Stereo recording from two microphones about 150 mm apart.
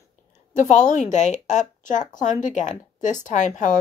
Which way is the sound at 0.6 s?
55° left (ahead or behind).